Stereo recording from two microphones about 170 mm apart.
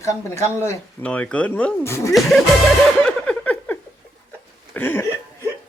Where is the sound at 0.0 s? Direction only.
15° left (ahead or behind).